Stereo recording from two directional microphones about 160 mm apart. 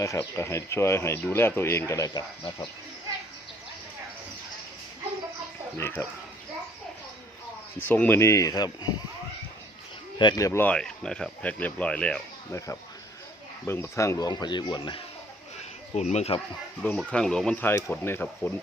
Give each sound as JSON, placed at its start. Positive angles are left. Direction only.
{"t": 0.0, "sound": "speech", "side_deg": 20}
{"t": 6.0, "sound": "speech", "side_deg": 15}
{"t": 7.8, "sound": "speech", "side_deg": 10}
{"t": 10.2, "sound": "speech", "side_deg": 25}
{"t": 12.5, "sound": "speech", "side_deg": 20}
{"t": 16.0, "sound": "speech", "side_deg": 45}
{"t": 16.8, "sound": "speech", "side_deg": 10}